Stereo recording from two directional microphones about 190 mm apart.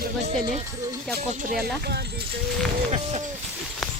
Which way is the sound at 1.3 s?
45° right (ahead or behind).